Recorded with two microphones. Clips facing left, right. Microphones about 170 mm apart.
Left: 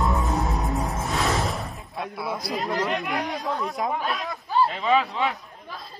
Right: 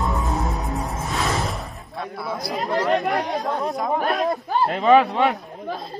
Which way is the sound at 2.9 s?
45° right (ahead or behind).